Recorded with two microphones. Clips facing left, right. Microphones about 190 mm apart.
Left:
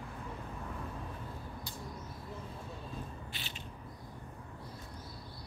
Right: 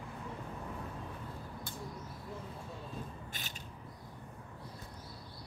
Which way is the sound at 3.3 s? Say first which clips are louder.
Left 1 dB; 45° right (ahead or behind).